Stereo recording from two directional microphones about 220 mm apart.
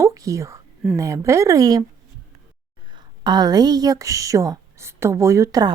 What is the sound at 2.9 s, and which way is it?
A woman's voice, 20° right (ahead or behind).